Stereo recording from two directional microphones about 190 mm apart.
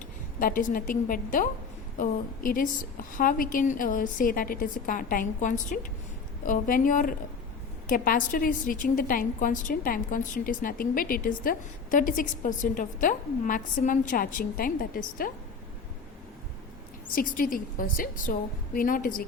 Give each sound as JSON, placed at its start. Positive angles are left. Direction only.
{"t": 0.3, "sound": "a woman's voice", "side_deg": 45}
{"t": 17.2, "sound": "a woman's voice", "side_deg": 45}